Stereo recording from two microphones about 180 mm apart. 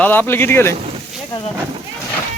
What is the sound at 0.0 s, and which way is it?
Speech, 10° left (ahead or behind).